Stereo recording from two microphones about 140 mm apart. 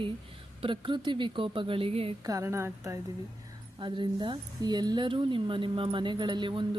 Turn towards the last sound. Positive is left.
turn(degrees=-35)  # may be behind; listen again after turning